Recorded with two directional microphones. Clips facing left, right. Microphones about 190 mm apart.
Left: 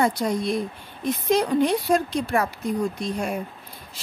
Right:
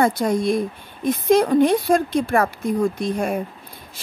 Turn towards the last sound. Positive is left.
turn(degrees=-55)  # may be behind; listen again after turning